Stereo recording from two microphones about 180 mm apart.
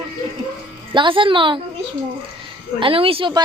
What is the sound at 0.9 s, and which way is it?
Speech, 25° right (ahead or behind).